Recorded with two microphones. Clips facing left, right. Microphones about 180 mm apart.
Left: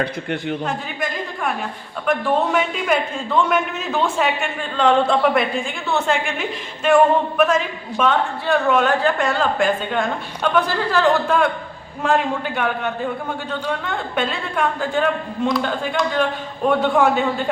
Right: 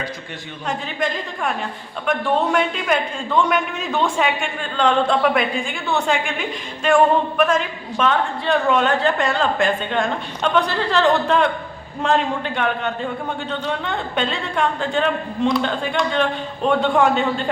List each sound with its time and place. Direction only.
0.6 s a woman's voice: centre (ahead or behind)
2.0 s a woman's voice: 5° left (ahead or behind)